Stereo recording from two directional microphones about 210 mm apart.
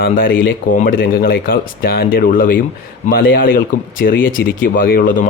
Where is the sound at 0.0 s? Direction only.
45° left (ahead or behind).